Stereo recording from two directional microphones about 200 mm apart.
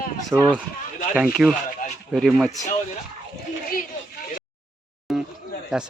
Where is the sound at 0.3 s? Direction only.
10° right (ahead or behind).